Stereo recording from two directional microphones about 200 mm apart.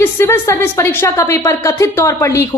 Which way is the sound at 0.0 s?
10° left (ahead or behind).